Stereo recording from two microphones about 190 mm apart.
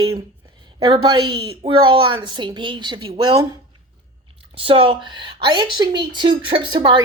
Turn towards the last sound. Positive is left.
turn(degrees=-25)  # may be behind; listen again after turning